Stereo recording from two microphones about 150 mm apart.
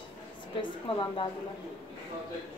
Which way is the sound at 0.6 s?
35° left (ahead or behind).